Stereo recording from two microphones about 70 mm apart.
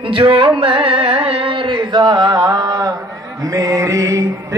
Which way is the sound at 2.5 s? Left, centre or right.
Right.